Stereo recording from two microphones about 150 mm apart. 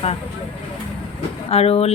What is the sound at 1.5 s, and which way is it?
Speech, 45° left (ahead or behind).